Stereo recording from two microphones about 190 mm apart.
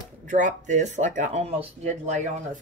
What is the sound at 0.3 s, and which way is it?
Speech, 40° right (ahead or behind).